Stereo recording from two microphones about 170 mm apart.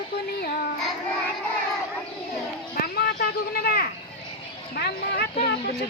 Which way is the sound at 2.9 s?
70° left (ahead or behind).